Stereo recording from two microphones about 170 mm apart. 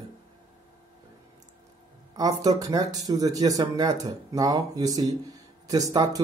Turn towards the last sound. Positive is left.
turn(degrees=-20)  # may be behind; listen again after turning